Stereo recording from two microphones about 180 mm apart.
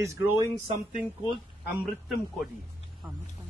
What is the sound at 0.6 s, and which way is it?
Speech, 45° right (ahead or behind).